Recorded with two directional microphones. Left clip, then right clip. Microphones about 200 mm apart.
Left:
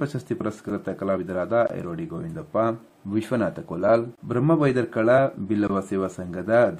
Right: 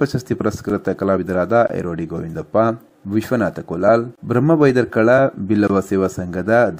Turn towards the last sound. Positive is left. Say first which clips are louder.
# right 5 dB
turn(degrees=-25)  # may be behind; listen again after turning